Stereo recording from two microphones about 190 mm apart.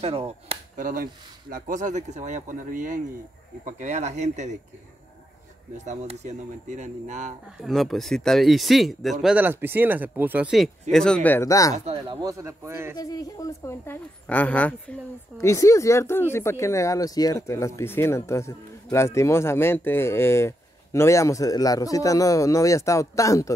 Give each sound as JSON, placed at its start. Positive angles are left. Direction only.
{"t": 0.0, "sound": "speech", "side_deg": -30}
{"t": 5.9, "sound": "speech", "side_deg": -40}
{"t": 7.6, "sound": "speech", "side_deg": 0}
{"t": 11.7, "sound": "speech", "side_deg": -30}
{"t": 12.9, "sound": "a woman's voice", "side_deg": 20}